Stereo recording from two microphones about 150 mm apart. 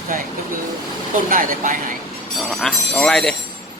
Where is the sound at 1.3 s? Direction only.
65° right (ahead or behind).